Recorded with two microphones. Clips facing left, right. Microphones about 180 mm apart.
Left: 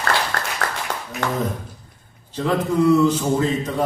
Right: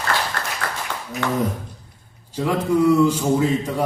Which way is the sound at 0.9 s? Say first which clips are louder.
Left 2 dB; 45° left (ahead or behind).